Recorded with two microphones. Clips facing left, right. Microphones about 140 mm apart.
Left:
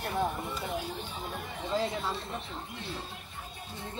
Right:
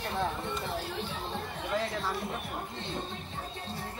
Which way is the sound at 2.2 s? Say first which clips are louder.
Right 3 dB; 25° right (ahead or behind).